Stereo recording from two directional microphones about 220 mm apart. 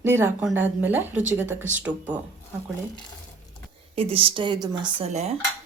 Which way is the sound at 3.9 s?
25° right (ahead or behind).